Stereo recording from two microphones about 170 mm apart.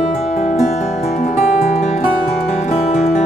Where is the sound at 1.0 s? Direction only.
55° left (ahead or behind).